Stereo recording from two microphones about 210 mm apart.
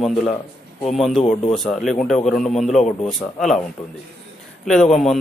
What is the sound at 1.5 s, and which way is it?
Speech, centre (ahead or behind).